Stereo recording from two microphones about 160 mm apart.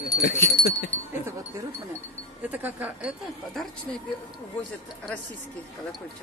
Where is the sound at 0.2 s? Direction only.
90° left.